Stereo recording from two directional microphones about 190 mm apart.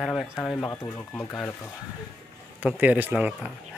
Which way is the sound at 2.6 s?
5° right (ahead or behind).